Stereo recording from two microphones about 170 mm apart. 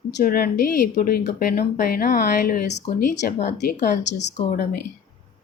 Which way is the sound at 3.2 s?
60° left (ahead or behind).